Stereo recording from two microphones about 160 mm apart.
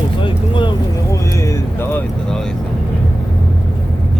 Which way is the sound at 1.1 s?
20° left (ahead or behind).